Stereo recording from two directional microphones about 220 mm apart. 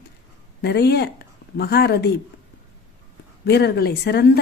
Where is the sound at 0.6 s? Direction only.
50° left (ahead or behind).